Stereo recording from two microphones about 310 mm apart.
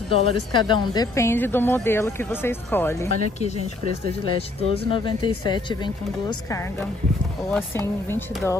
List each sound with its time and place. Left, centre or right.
0.1 s speech: centre
4.6 s speech: centre
7.5 s speech: centre